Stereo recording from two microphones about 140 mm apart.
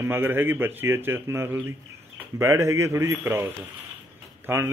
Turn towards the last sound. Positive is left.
turn(degrees=-15)  # may be behind; listen again after turning